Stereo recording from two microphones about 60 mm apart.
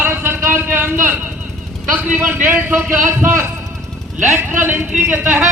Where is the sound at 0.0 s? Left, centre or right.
Right.